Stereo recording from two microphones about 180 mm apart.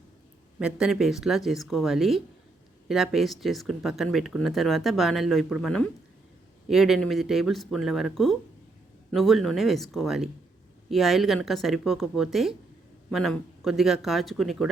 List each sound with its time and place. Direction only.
0.6 s speech: 5° right (ahead or behind)